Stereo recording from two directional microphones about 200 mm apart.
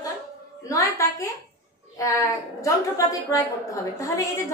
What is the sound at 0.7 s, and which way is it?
Speech, 15° left (ahead or behind).